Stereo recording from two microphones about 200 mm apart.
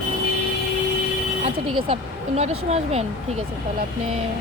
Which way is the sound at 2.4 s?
30° right (ahead or behind).